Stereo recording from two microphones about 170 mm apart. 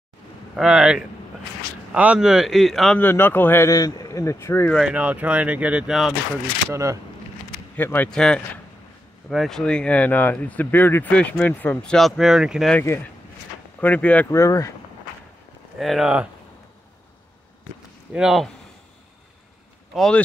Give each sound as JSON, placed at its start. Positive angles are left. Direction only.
{"t": 0.6, "sound": "speech", "side_deg": 0}
{"t": 3.0, "sound": "speech", "side_deg": 15}
{"t": 4.7, "sound": "speech", "side_deg": -5}
{"t": 6.7, "sound": "speech", "side_deg": -20}
{"t": 7.7, "sound": "speech", "side_deg": 10}
{"t": 12.7, "sound": "speech", "side_deg": 15}
{"t": 15.8, "sound": "speech", "side_deg": 0}
{"t": 18.1, "sound": "speech", "side_deg": 0}
{"t": 19.9, "sound": "speech", "side_deg": 0}